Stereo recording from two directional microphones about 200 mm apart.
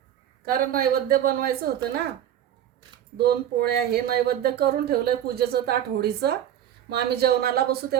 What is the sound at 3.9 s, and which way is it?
Speech, 50° right (ahead or behind).